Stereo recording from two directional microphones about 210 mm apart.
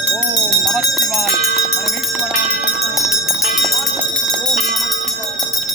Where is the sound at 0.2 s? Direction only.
Centre (ahead or behind).